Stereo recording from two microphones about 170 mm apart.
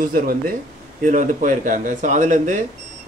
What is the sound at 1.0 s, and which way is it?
A man's voice, 45° right (ahead or behind).